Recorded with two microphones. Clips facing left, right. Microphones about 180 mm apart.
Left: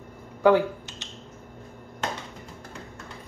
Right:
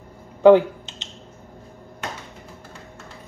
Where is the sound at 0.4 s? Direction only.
20° right (ahead or behind).